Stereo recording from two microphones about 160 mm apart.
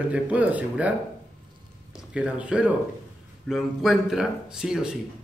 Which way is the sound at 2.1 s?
5° right (ahead or behind).